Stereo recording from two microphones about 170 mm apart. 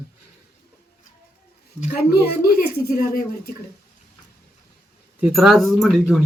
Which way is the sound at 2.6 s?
65° left (ahead or behind).